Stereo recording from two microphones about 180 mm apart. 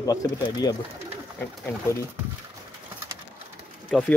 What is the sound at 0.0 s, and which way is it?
Speech, 20° left (ahead or behind).